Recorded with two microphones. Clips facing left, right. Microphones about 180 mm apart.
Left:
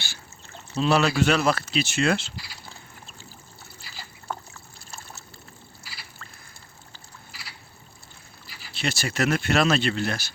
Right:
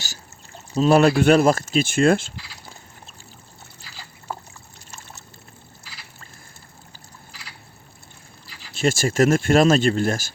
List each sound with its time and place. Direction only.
0.8 s speech: 50° right (ahead or behind)
8.7 s speech: 45° right (ahead or behind)